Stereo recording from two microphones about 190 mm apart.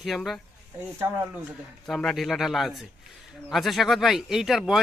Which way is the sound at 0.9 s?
15° right (ahead or behind).